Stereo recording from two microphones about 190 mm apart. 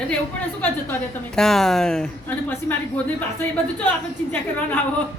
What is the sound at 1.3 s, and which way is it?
Speech, centre (ahead or behind).